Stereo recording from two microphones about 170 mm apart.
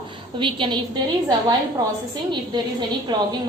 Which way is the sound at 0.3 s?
30° right (ahead or behind).